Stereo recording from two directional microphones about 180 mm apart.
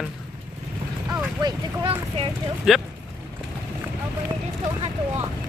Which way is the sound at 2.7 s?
Centre (ahead or behind).